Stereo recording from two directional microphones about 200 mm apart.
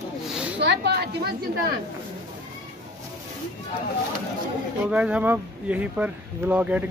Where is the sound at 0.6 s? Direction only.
55° right (ahead or behind).